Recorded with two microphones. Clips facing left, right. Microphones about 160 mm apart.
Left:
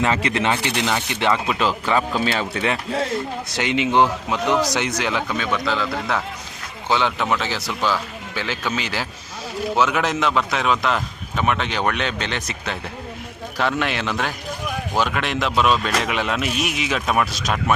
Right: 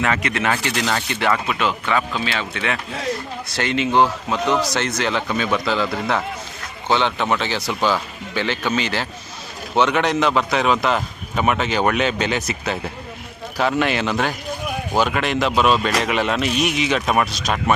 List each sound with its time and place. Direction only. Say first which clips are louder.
0.0 s speech: left 1 dB; 30° left (ahead or behind)
0.8 s speech: even; 15° left (ahead or behind)
1.9 s speech: left 2 dB; 35° left (ahead or behind)
3.5 s speech: right 1 dB; 15° left (ahead or behind)
5.3 s a man's voice: right 2 dB; 5° right (ahead or behind)